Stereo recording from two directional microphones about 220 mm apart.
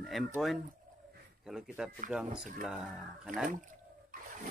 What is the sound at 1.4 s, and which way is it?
Speech, centre (ahead or behind).